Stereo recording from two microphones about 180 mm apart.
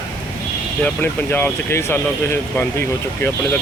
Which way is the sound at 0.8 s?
10° left (ahead or behind).